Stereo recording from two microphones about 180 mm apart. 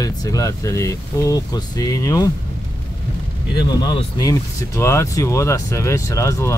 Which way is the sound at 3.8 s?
25° left (ahead or behind).